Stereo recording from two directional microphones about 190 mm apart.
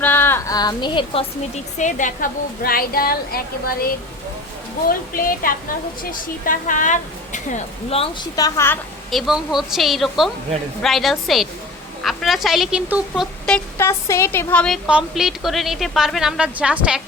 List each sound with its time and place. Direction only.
0.0 s speech: 10° left (ahead or behind); by 3.4 s 50° left (ahead or behind)
4.9 s a woman's voice: 50° left (ahead or behind); by 8.8 s 15° left (ahead or behind)
9.0 s a woman's voice: centre (ahead or behind)
13.4 s speech: 10° left (ahead or behind)
14.8 s a woman's voice: 5° right (ahead or behind)